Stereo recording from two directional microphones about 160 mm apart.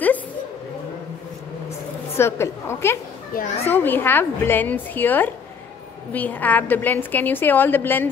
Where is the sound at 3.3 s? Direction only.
60° left (ahead or behind).